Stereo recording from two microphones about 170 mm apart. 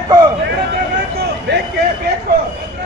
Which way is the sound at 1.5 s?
80° right.